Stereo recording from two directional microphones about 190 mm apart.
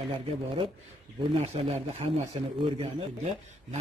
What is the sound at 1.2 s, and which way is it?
A man's voice, 30° right (ahead or behind).